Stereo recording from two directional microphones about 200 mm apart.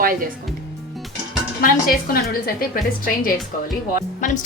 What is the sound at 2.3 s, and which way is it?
A woman's voice, 45° left (ahead or behind).